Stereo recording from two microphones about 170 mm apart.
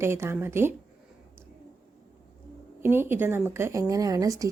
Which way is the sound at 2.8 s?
15° right (ahead or behind).